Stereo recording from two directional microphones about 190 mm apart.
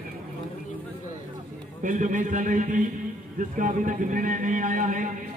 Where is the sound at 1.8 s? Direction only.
45° right (ahead or behind).